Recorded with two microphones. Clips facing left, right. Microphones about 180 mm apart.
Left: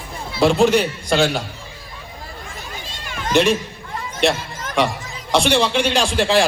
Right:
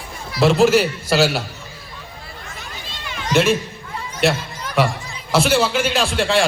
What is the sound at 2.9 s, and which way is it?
Run, 45° left (ahead or behind).